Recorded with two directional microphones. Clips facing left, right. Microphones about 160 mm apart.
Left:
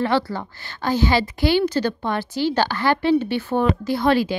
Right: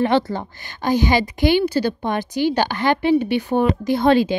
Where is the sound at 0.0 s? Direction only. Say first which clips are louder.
Right 3 dB; 20° right (ahead or behind).